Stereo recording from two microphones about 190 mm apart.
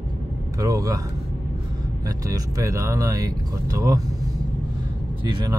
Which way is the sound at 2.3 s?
15° right (ahead or behind).